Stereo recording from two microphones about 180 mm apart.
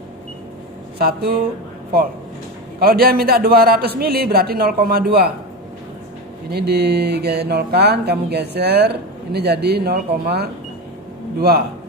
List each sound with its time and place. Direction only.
0.9 s speech: 60° right (ahead or behind)
2.8 s speech: 55° right (ahead or behind)
6.5 s speech: 65° right (ahead or behind)